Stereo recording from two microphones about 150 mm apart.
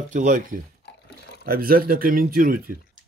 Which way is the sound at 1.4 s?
80° right.